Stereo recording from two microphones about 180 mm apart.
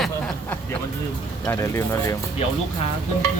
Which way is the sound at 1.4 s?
20° left (ahead or behind).